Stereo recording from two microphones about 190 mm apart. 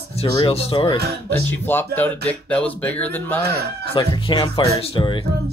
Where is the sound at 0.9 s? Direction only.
60° right (ahead or behind).